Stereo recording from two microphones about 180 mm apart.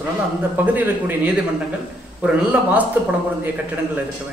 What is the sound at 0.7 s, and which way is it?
A man's voice, 10° right (ahead or behind).